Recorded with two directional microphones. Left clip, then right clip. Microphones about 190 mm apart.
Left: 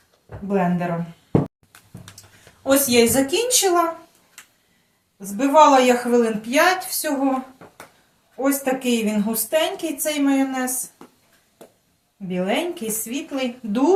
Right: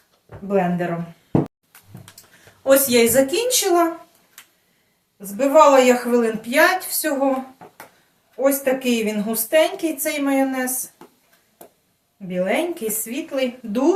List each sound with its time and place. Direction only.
0.4 s a woman's voice: 20° right (ahead or behind)
2.6 s a woman's voice: 25° right (ahead or behind)
5.2 s a woman's voice: 20° right (ahead or behind)
8.4 s a woman's voice: 25° right (ahead or behind)
12.3 s a woman's voice: 25° right (ahead or behind)